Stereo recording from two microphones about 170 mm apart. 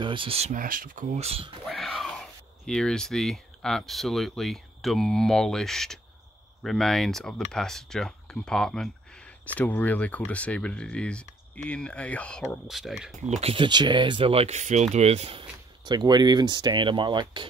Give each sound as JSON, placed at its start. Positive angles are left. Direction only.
{"t": 0.0, "sound": "speech", "side_deg": -30}
{"t": 0.6, "sound": "speech", "side_deg": -55}
{"t": 1.2, "sound": "speech", "side_deg": -35}
{"t": 1.7, "sound": "speech", "side_deg": 0}
{"t": 13.2, "sound": "speech", "side_deg": -40}